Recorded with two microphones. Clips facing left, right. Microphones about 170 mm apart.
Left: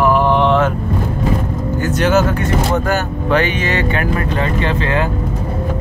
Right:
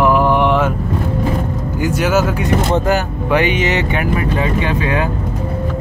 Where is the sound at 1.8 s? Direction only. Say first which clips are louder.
Left 1 dB; 10° right (ahead or behind).